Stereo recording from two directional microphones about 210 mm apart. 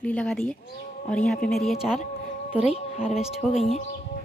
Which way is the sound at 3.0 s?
Centre (ahead or behind).